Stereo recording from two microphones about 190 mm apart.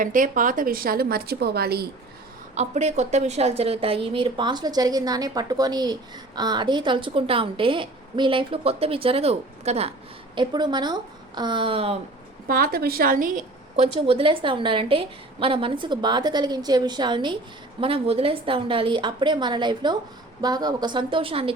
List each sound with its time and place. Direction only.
0.0 s a woman's voice: 45° right (ahead or behind)
2.6 s a woman's voice: 35° right (ahead or behind)
10.3 s a woman's voice: 25° right (ahead or behind)
12.5 s a woman's voice: 50° right (ahead or behind); by 21.5 s 30° right (ahead or behind)